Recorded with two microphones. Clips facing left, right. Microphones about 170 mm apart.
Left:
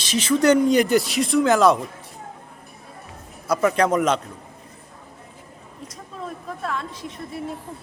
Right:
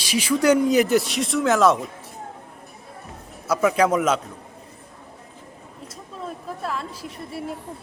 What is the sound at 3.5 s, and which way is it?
Speech, 5° right (ahead or behind).